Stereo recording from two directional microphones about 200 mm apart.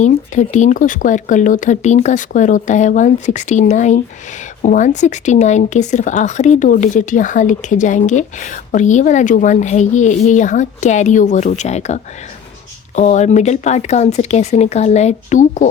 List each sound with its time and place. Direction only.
0.0 s speech: 35° left (ahead or behind)
13.0 s speech: 35° left (ahead or behind)